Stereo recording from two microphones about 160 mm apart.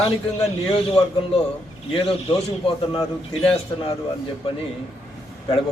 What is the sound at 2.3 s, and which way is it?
A man's voice, 30° left (ahead or behind).